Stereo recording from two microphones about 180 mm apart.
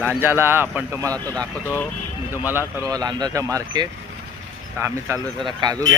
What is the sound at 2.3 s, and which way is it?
Speech, 10° right (ahead or behind).